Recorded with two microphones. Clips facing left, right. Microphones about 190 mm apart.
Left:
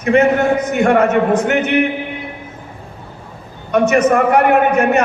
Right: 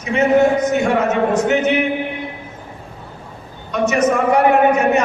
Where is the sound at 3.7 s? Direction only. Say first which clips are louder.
Left 4 dB; 55° left (ahead or behind).